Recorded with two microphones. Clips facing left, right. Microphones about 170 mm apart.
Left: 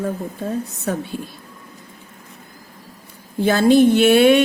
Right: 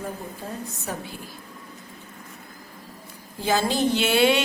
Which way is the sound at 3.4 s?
60° left (ahead or behind).